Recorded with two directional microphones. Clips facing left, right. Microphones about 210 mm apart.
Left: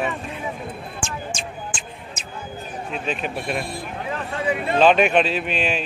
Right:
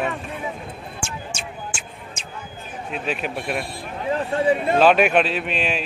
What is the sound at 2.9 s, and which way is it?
Speech, 5° right (ahead or behind).